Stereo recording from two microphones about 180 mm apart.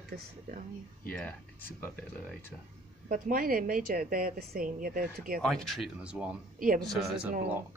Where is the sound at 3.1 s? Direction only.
50° right (ahead or behind).